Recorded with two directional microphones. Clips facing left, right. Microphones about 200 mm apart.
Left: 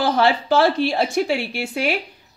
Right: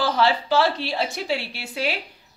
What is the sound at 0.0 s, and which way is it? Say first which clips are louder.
A woman's voice: left 3 dB; 50° left (ahead or behind).